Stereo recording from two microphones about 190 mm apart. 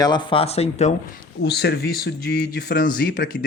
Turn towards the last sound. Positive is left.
turn(degrees=45)  # may be behind; listen again after turning